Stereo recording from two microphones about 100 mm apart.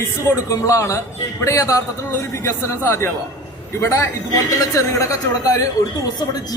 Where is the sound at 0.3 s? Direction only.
30° left (ahead or behind).